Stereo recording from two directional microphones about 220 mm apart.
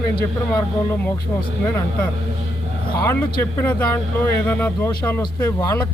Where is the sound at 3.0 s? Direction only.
15° left (ahead or behind).